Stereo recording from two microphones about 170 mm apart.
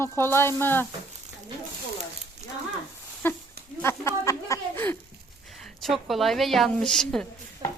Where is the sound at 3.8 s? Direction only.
15° left (ahead or behind).